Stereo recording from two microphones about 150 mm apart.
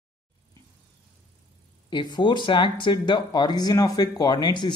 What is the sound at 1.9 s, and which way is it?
Speech, 30° left (ahead or behind).